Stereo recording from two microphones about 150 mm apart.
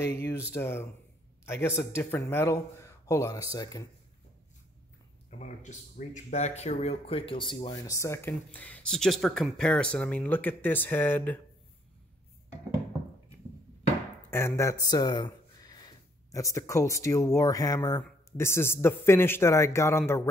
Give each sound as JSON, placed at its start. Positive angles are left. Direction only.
{"t": 0.5, "sound": "a man's voice", "side_deg": 15}
{"t": 5.4, "sound": "speech", "side_deg": 55}
{"t": 14.3, "sound": "speech", "side_deg": 20}